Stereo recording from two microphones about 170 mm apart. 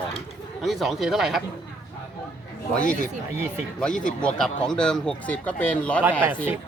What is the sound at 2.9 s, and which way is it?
Speech, 50° left (ahead or behind).